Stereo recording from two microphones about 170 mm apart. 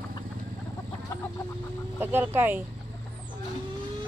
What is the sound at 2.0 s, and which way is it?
Speech, 15° right (ahead or behind).